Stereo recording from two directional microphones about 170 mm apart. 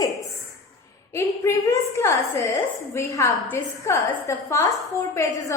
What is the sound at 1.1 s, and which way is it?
A woman's voice, 20° left (ahead or behind).